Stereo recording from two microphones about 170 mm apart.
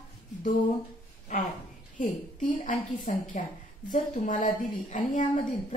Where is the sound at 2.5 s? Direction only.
50° left (ahead or behind).